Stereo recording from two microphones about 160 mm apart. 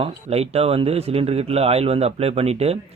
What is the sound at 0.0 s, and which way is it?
Speech, 40° right (ahead or behind).